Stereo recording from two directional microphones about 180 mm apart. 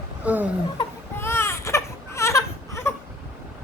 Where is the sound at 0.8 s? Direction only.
15° left (ahead or behind).